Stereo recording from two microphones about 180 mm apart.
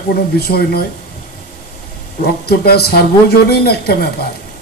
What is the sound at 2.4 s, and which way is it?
Speech, 60° left (ahead or behind).